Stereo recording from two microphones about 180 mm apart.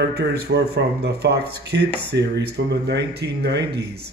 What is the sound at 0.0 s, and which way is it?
Speech, 70° right (ahead or behind).